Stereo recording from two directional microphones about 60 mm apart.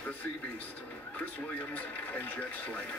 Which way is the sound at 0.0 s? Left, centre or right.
Left.